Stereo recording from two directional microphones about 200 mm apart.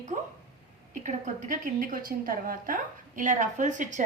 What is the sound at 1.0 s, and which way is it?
A woman's voice, 40° right (ahead or behind).